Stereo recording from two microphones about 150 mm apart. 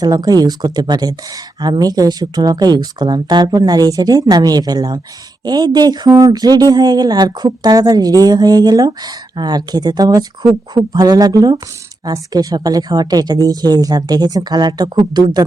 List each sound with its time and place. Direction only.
0.0 s speech: 25° right (ahead or behind)